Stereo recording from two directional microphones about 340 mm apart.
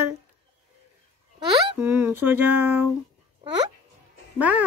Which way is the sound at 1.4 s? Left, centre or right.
Centre.